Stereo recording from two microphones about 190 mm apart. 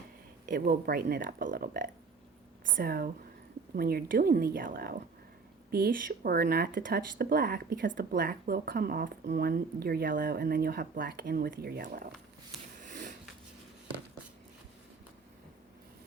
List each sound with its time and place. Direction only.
0.4 s speech: 45° right (ahead or behind)
12.8 s sniff: 45° right (ahead or behind)